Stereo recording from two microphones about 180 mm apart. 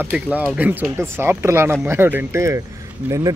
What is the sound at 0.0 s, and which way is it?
Speech, 10° right (ahead or behind).